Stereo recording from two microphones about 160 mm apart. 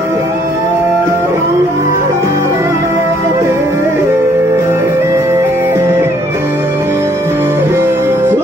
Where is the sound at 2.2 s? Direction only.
15° right (ahead or behind).